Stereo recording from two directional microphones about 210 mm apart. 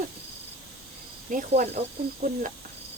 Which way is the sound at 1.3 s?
40° right (ahead or behind).